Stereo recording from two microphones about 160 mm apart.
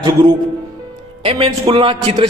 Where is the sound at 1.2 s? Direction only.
35° right (ahead or behind).